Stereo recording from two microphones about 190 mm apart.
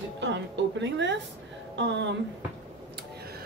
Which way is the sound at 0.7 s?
70° right (ahead or behind).